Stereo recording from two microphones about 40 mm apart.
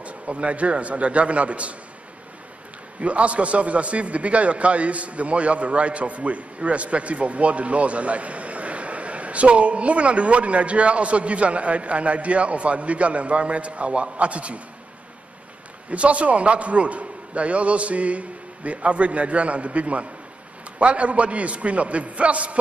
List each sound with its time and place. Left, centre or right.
0.0 s a man's voice: right
3.0 s a man's voice: right
15.9 s a man's voice: right